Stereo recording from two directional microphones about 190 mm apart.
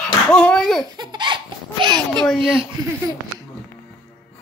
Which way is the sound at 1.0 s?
25° right (ahead or behind).